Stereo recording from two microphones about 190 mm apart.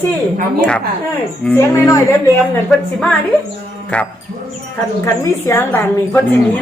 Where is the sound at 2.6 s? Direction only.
Centre (ahead or behind).